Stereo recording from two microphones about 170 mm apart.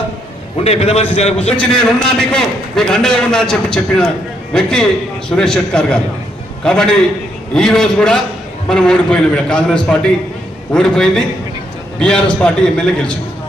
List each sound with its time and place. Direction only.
0.6 s a man's voice: 35° left (ahead or behind)
1.4 s a man's voice: 5° left (ahead or behind)